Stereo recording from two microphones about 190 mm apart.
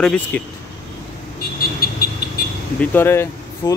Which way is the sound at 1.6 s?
55° left (ahead or behind).